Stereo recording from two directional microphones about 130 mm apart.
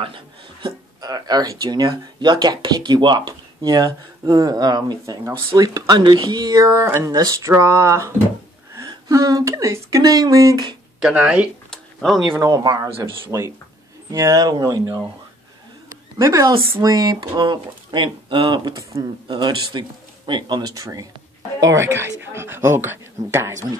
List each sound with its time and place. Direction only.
0.0 s speech: 40° right (ahead or behind)
11.0 s speech: 5° right (ahead or behind)
11.7 s a sound: centre (ahead or behind)
12.4 s speech: 25° right (ahead or behind)
16.2 s speech: 25° right (ahead or behind)